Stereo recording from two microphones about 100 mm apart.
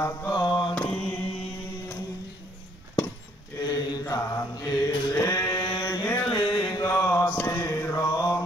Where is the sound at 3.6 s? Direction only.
40° left (ahead or behind).